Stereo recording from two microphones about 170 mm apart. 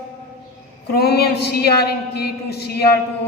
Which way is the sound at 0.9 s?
70° left (ahead or behind).